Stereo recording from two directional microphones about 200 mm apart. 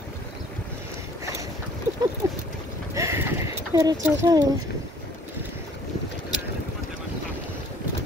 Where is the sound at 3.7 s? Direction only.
20° right (ahead or behind).